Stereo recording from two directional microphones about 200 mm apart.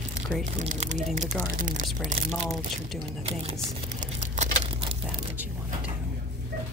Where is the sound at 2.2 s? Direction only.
Centre (ahead or behind).